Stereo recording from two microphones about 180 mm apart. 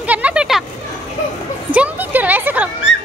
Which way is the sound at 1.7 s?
10° right (ahead or behind).